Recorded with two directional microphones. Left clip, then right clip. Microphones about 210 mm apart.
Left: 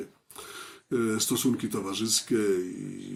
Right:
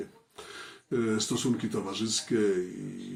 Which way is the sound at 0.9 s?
50° left (ahead or behind).